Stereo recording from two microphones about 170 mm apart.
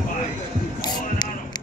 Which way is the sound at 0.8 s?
25° left (ahead or behind).